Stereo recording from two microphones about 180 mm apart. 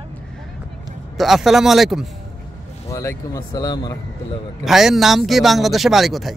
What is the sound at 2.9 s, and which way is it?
Speech, 15° left (ahead or behind).